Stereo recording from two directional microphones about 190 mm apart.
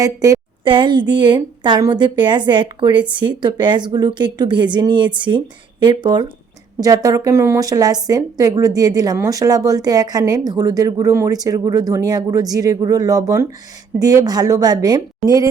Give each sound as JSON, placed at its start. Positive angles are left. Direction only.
{"t": 0.0, "sound": "a woman's voice", "side_deg": -20}